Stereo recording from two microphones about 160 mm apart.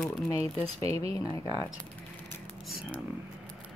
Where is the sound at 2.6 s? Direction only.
Centre (ahead or behind).